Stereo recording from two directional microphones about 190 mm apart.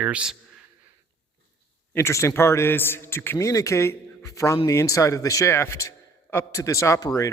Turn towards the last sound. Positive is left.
turn(degrees=15)  # may be behind; listen again after turning